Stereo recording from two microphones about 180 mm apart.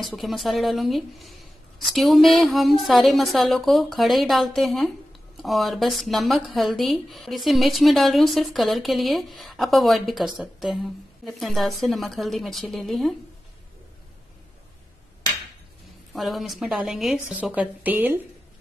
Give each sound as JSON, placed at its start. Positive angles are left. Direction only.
{"t": 0.0, "sound": "speech", "side_deg": 0}
{"t": 16.1, "sound": "speech", "side_deg": 0}